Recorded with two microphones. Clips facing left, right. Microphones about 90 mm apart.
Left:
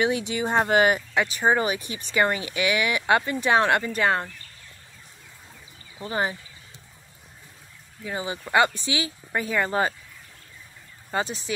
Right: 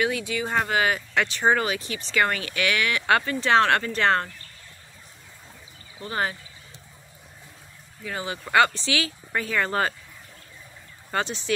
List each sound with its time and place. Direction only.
0.0 s speech: 25° left (ahead or behind)
1.1 s speech: 10° left (ahead or behind)
1.6 s speech: 20° left (ahead or behind)
5.9 s speech: 15° left (ahead or behind)
8.0 s speech: 20° left (ahead or behind)
11.1 s speech: 10° left (ahead or behind)